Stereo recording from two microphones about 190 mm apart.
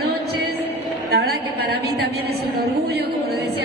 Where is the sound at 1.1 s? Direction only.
55° right (ahead or behind).